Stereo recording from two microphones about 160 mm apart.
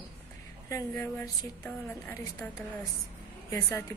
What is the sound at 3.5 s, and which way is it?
Speech, 20° left (ahead or behind).